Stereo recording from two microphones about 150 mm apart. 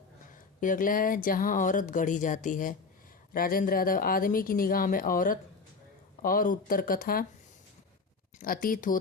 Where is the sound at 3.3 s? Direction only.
70° left (ahead or behind).